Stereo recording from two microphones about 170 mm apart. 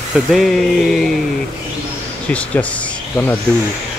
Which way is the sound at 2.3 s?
10° left (ahead or behind).